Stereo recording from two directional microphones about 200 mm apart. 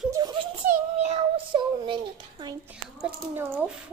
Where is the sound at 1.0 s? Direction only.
25° right (ahead or behind).